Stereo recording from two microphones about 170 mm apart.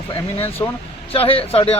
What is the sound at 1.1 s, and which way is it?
Speech, 35° left (ahead or behind).